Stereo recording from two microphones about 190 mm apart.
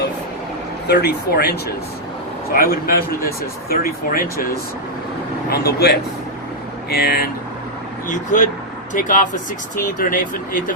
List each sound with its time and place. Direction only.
0.9 s speech: 55° left (ahead or behind)
5.5 s speech: 55° left (ahead or behind)
8.0 s speech: 45° left (ahead or behind)